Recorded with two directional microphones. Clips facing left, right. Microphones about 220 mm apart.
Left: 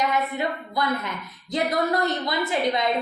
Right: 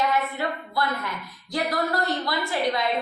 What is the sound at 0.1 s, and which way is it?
A woman's voice, 20° left (ahead or behind).